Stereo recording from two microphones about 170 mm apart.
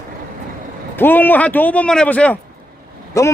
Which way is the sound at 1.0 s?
10° left (ahead or behind).